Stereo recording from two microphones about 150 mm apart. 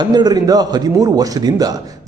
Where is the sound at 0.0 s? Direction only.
30° right (ahead or behind).